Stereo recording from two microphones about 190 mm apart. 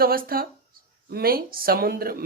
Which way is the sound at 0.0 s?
50° right (ahead or behind).